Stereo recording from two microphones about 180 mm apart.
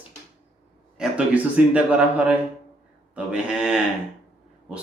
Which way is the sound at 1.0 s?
5° right (ahead or behind).